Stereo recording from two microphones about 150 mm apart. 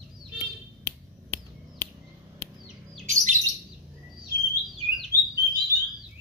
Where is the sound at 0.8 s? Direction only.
15° left (ahead or behind).